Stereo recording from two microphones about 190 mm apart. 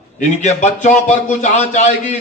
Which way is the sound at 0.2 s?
40° left (ahead or behind).